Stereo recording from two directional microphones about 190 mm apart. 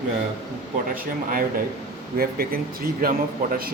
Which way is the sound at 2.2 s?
50° right (ahead or behind).